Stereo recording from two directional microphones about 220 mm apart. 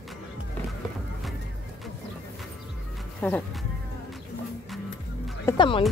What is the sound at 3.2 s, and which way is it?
Speech, 5° left (ahead or behind).